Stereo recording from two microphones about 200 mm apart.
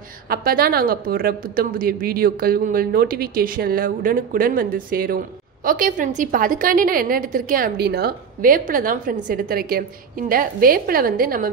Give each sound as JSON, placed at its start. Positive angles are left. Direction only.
{"t": 0.3, "sound": "a woman's voice", "side_deg": -50}